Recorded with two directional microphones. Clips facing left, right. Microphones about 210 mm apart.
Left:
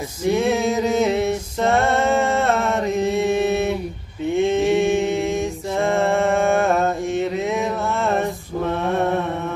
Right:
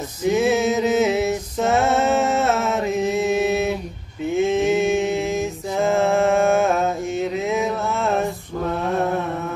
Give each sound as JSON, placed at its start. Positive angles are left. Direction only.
{"t": 0.3, "sound": "mantra", "side_deg": -5}